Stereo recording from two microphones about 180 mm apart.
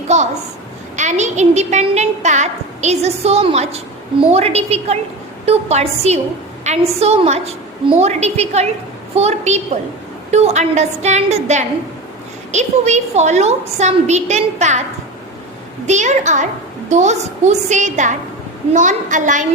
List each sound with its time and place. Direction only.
0.1 s a woman's voice: 40° right (ahead or behind)
15.9 s a woman's voice: 40° right (ahead or behind)